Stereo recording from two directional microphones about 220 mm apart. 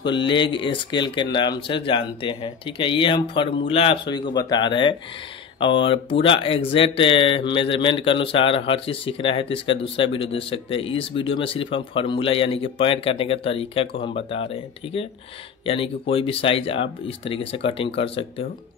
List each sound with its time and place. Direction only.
0.1 s speech: 20° left (ahead or behind)